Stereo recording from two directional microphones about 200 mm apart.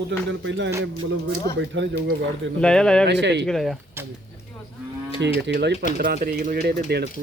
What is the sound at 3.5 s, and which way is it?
Speech, centre (ahead or behind).